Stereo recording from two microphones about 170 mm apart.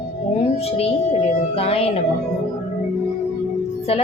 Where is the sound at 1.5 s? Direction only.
35° left (ahead or behind).